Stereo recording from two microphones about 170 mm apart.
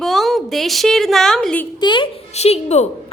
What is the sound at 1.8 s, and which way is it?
Speech, 25° left (ahead or behind).